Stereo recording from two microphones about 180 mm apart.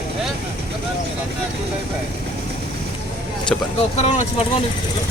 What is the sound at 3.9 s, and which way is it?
Speech, 35° left (ahead or behind).